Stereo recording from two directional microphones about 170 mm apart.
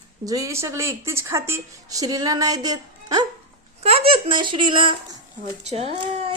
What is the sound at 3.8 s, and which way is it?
Speech, 35° right (ahead or behind).